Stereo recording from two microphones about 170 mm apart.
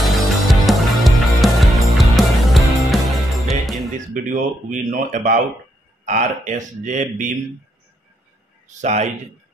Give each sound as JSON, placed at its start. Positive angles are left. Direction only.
{"t": 0.0, "sound": "music", "side_deg": 0}
{"t": 4.1, "sound": "speech", "side_deg": -55}
{"t": 8.6, "sound": "a man's voice", "side_deg": -40}